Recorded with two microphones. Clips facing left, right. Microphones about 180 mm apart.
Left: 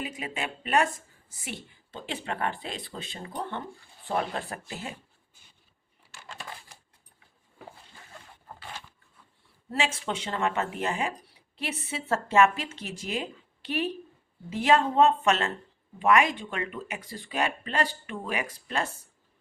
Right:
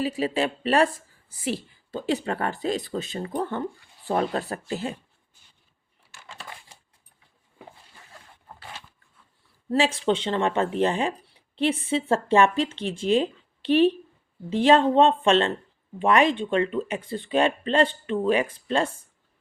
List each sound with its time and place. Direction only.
0.0 s speech: 35° right (ahead or behind)
9.7 s speech: 35° right (ahead or behind)